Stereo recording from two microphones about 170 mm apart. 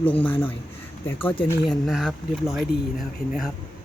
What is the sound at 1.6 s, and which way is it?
Speech, centre (ahead or behind).